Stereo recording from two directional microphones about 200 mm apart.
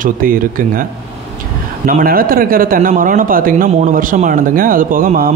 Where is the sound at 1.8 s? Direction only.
45° right (ahead or behind).